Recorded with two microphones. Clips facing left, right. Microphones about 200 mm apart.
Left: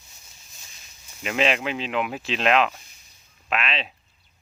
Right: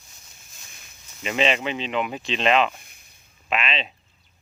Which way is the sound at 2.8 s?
55° right (ahead or behind).